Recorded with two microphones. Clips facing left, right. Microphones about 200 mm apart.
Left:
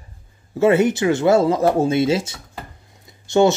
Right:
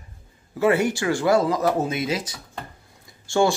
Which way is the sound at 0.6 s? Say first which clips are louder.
Left 5 dB; 20° left (ahead or behind).